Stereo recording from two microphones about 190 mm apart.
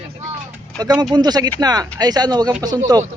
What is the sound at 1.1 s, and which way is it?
Speech, 20° right (ahead or behind).